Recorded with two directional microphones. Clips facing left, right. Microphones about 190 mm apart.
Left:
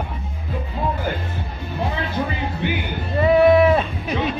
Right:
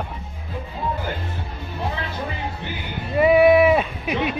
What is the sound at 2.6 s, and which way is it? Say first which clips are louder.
Music: left 9 dB; 80° left.